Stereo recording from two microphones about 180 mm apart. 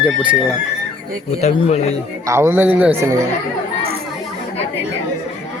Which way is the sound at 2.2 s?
15° right (ahead or behind).